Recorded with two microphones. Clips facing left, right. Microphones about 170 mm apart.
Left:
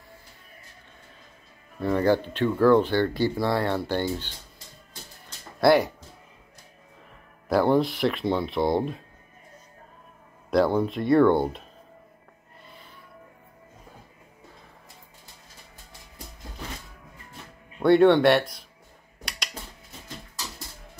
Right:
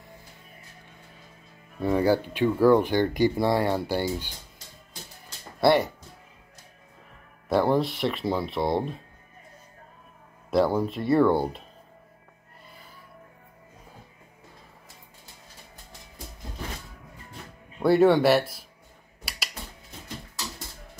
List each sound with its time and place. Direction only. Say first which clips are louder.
1.8 s speech: even; 10° right (ahead or behind)
5.6 s speech: left 2 dB; centre (ahead or behind)
7.4 s speech: left 2 dB; centre (ahead or behind)
10.5 s speech: left 1 dB; 5° right (ahead or behind)
17.7 s speech: left 2 dB; 5° right (ahead or behind)
19.2 s a sound: left 2 dB; 5° right (ahead or behind)